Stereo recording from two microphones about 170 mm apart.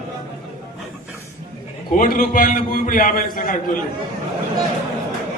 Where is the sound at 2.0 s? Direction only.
55° left (ahead or behind).